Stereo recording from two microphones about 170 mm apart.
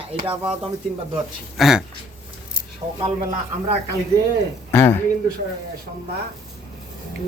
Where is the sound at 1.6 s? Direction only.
5° right (ahead or behind).